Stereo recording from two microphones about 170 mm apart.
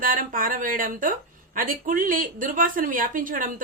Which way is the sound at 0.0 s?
55° right (ahead or behind).